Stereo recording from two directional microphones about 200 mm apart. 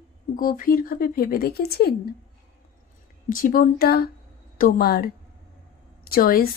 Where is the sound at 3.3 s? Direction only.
45° left (ahead or behind).